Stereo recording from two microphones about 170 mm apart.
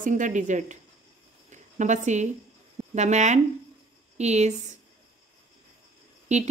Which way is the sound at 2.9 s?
45° right (ahead or behind).